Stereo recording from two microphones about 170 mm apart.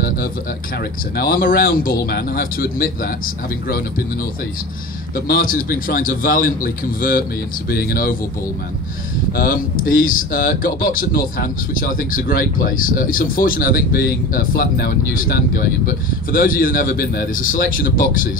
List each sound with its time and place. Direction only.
1.1 s speech: 60° left (ahead or behind)
5.1 s speech: 55° left (ahead or behind)
9.3 s speech: 60° left (ahead or behind)